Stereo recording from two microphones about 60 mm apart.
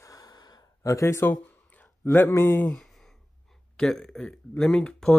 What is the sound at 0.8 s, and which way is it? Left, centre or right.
Speech, left.